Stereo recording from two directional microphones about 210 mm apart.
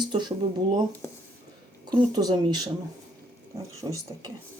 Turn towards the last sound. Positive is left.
turn(degrees=-15)  # may be behind; listen again after turning